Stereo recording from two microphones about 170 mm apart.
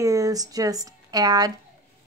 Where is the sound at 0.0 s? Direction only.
20° right (ahead or behind).